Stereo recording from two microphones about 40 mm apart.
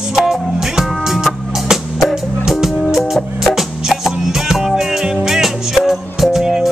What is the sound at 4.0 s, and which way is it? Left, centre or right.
Music, centre.